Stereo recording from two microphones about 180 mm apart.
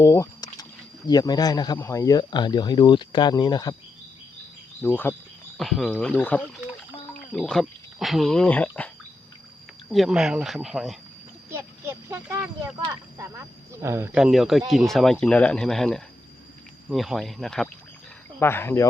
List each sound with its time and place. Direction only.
0.0 s a sound: 20° left (ahead or behind)
1.0 s speech: 20° left (ahead or behind)
4.8 s speech: 10° left (ahead or behind)
9.9 s speech: centre (ahead or behind)
11.5 s a sound: 15° right (ahead or behind)
12.9 s speech: 15° right (ahead or behind); by 17.7 s centre (ahead or behind)
18.3 s speech: 10° left (ahead or behind)